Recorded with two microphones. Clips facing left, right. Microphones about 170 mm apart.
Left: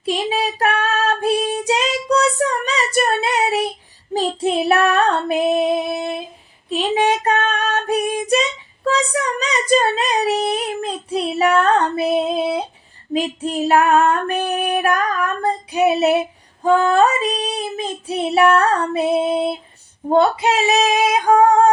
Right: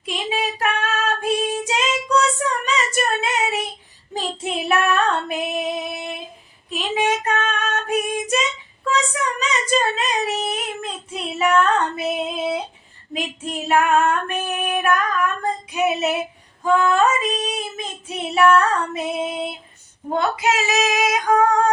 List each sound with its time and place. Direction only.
0.0 s child singing: 35° left (ahead or behind)